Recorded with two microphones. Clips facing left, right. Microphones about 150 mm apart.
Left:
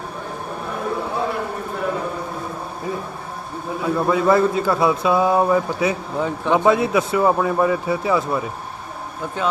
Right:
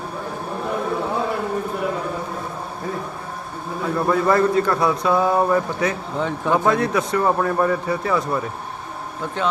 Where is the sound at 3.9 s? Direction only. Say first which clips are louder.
Left 1 dB; 5° left (ahead or behind).